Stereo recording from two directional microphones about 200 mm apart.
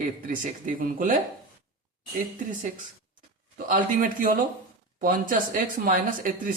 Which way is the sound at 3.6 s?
45° right (ahead or behind).